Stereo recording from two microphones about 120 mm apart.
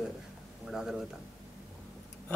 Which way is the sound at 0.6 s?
5° right (ahead or behind).